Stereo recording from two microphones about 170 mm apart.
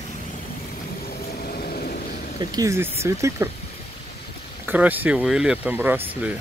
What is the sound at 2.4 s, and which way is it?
Speech, 20° right (ahead or behind).